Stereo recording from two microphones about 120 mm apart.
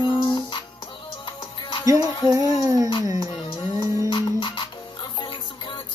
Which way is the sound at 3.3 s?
35° left (ahead or behind).